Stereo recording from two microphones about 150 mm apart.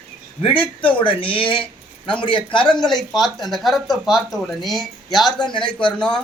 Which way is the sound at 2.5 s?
5° left (ahead or behind).